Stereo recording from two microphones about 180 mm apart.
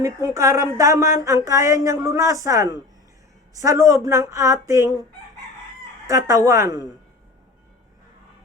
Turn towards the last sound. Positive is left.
turn(degrees=-20)  # may be behind; listen again after turning